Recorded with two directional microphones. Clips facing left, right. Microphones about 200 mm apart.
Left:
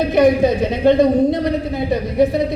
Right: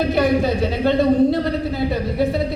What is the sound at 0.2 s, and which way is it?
A woman's voice, 20° left (ahead or behind).